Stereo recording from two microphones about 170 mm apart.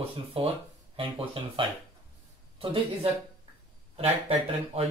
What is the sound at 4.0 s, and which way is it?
Speech, 35° right (ahead or behind).